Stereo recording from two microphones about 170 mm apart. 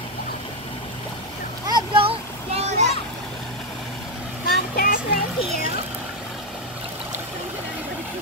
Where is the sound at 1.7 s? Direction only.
30° right (ahead or behind).